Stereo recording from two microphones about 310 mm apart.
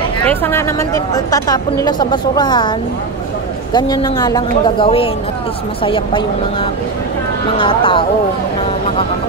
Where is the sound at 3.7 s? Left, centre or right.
Centre.